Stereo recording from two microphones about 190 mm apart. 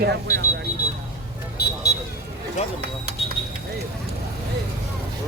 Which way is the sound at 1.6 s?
55° left (ahead or behind).